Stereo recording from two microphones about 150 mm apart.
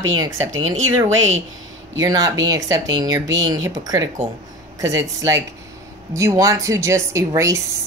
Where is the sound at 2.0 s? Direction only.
25° right (ahead or behind).